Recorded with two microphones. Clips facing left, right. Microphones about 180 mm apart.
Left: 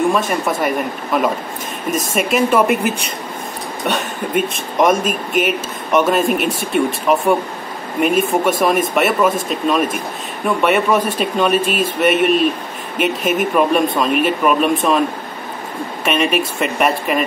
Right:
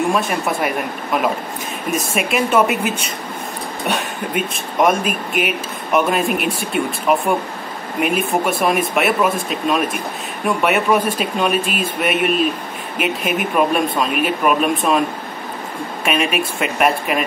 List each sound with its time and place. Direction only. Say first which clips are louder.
0.1 s speech: left 1 dB; 5° right (ahead or behind)
3.8 s speech: left 2 dB; 5° right (ahead or behind)
13.2 s speech: left 3 dB; 45° left (ahead or behind)
13.6 s speech: left 1 dB; 5° right (ahead or behind)
16.1 s speech: left 2 dB; centre (ahead or behind)